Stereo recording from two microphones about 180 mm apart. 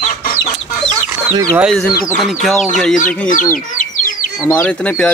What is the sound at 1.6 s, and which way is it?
Speech, centre (ahead or behind).